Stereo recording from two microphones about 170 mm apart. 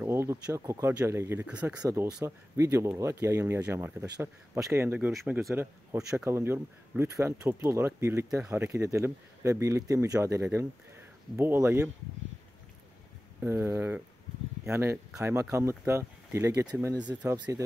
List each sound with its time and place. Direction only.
0.0 s speech: 15° right (ahead or behind)
1.8 s speech: 20° right (ahead or behind)
5.1 s speech: centre (ahead or behind)
5.5 s speech: 15° right (ahead or behind)
13.4 s speech: 15° right (ahead or behind)